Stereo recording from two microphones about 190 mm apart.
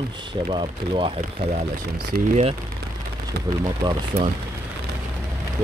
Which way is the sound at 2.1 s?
55° right (ahead or behind).